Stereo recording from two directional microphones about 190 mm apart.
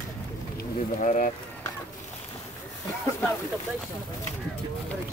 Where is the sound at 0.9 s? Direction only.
40° left (ahead or behind).